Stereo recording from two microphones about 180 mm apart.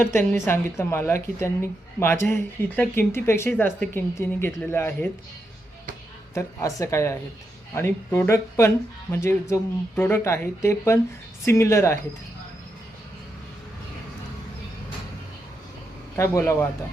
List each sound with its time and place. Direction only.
0.0 s a woman's voice: 10° left (ahead or behind)
6.3 s a woman's voice: 15° left (ahead or behind)
16.1 s a woman's voice: 15° left (ahead or behind)